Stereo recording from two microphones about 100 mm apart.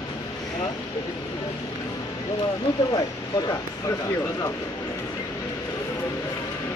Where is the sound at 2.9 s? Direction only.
40° left (ahead or behind).